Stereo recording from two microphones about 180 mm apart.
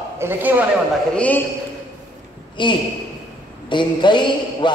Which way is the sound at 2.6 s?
25° left (ahead or behind).